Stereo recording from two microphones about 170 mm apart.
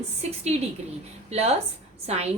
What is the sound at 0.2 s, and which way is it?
A woman's voice, 40° right (ahead or behind).